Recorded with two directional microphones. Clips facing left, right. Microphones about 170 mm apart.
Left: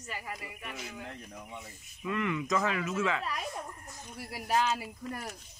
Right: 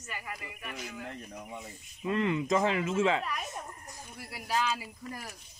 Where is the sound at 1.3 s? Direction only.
10° right (ahead or behind).